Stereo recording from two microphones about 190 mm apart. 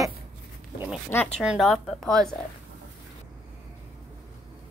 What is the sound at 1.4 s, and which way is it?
Speech, centre (ahead or behind).